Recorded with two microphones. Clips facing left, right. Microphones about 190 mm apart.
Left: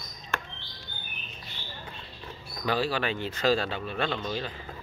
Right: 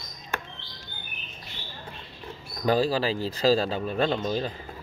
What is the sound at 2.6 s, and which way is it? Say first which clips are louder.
Speech: right 5 dB; 40° right (ahead or behind).